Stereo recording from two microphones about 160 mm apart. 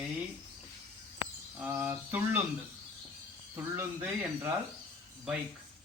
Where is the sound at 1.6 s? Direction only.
15° right (ahead or behind).